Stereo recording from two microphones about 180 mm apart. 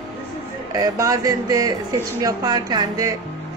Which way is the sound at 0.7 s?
20° right (ahead or behind).